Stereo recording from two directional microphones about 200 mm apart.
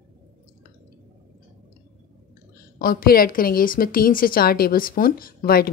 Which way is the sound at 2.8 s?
45° left (ahead or behind).